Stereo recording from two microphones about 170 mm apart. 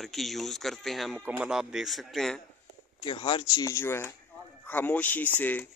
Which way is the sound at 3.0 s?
30° left (ahead or behind).